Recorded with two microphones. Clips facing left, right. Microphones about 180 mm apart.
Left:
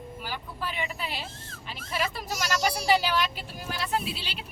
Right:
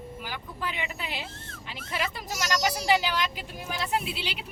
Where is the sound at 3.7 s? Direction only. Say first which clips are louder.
Even; 20° right (ahead or behind).